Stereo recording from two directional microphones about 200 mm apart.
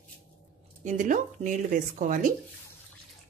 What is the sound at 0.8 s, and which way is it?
Speech, 40° right (ahead or behind).